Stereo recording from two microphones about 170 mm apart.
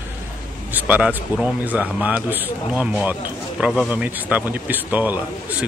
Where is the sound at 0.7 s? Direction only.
10° right (ahead or behind).